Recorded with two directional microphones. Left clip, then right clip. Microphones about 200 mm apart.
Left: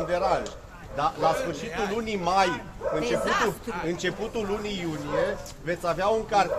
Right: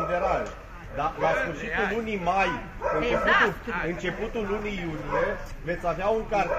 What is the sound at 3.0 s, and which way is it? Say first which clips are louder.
Speech: right 4 dB; 70° left (ahead or behind).